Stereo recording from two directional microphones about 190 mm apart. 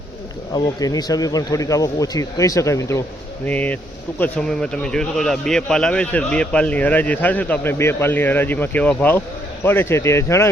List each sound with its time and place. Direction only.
0.5 s a man's voice: 20° left (ahead or behind)